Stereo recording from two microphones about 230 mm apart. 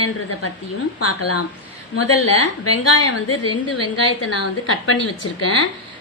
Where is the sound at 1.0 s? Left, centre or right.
Left.